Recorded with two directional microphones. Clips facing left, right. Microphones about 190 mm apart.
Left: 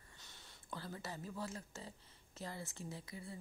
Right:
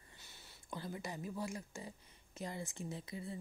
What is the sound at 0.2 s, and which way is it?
Speech, 10° right (ahead or behind).